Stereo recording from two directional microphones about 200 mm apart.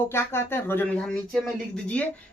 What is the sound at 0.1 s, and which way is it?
Speech, 10° left (ahead or behind).